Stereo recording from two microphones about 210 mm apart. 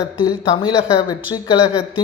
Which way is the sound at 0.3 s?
20° left (ahead or behind).